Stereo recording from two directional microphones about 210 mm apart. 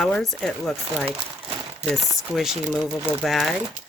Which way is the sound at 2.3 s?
Centre (ahead or behind).